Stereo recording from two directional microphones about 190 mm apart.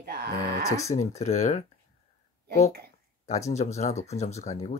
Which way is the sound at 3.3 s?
35° left (ahead or behind).